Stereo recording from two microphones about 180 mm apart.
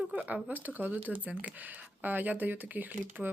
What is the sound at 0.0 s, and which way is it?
Speech, 10° right (ahead or behind).